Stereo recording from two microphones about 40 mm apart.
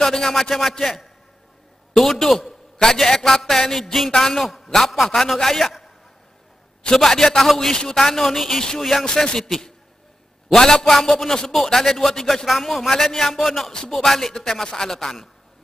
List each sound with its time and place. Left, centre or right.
0.0 s a man's voice: centre
2.1 s a man's voice: centre
5.2 s a man's voice: centre
7.0 s a man's voice: centre